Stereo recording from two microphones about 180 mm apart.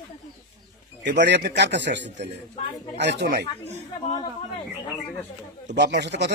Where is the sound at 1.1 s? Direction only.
70° right (ahead or behind).